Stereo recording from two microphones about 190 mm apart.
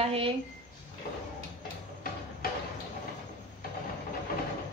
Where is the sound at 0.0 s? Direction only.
30° right (ahead or behind).